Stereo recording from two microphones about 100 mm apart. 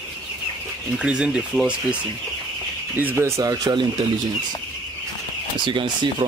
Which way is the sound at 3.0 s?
25° right (ahead or behind).